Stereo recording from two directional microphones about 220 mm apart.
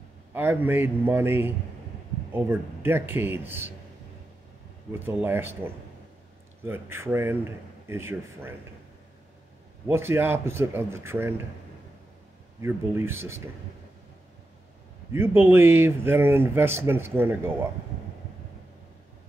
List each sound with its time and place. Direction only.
0.3 s speech: 10° right (ahead or behind)
4.9 s speech: 10° right (ahead or behind)
6.6 s speech: 10° right (ahead or behind)
9.8 s speech: 10° right (ahead or behind)
12.6 s speech: 10° right (ahead or behind)
15.1 s speech: 10° right (ahead or behind)